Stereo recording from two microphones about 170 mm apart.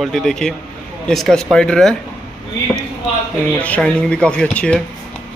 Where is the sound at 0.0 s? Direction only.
Centre (ahead or behind).